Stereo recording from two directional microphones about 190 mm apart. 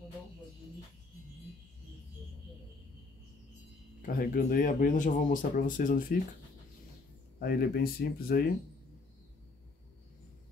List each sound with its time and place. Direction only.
4.0 s speech: 45° left (ahead or behind)
7.3 s speech: 55° left (ahead or behind)